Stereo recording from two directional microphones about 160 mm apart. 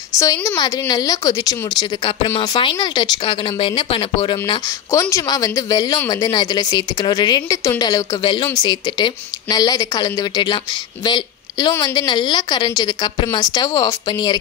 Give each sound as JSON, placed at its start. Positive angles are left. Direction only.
{"t": 0.2, "sound": "a woman's voice", "side_deg": 20}